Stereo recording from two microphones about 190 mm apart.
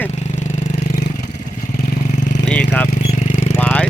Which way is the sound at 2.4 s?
5° left (ahead or behind).